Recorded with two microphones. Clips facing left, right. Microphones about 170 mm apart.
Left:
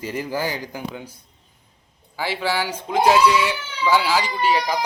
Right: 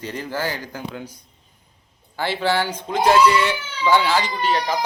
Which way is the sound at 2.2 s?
10° left (ahead or behind).